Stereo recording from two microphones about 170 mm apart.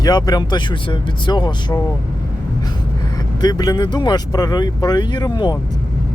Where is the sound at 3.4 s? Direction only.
25° left (ahead or behind).